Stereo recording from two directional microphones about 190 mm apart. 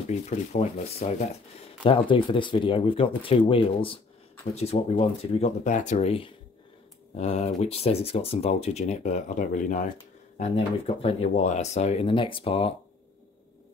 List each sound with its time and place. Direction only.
0.1 s speech: 35° left (ahead or behind)